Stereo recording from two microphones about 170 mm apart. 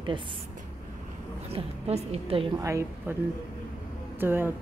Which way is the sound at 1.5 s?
35° right (ahead or behind).